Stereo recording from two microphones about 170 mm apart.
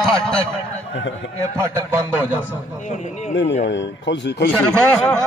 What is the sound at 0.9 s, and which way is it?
Speech, 90° left.